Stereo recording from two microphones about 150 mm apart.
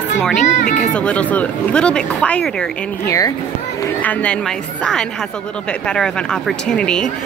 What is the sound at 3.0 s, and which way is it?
Speech, 20° left (ahead or behind).